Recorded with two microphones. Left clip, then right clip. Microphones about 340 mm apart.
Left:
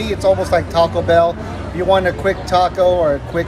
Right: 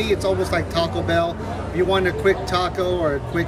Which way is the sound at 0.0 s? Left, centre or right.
Centre.